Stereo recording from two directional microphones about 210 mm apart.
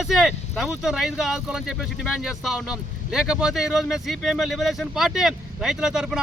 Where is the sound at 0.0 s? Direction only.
Centre (ahead or behind).